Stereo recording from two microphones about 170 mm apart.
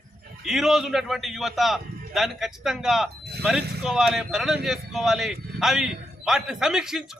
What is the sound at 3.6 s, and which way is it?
Speech, 70° right (ahead or behind).